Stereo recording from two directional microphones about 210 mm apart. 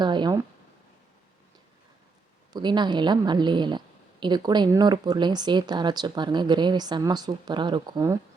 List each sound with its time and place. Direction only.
0.0 s a woman's voice: 20° right (ahead or behind)
2.5 s a woman's voice: 20° right (ahead or behind)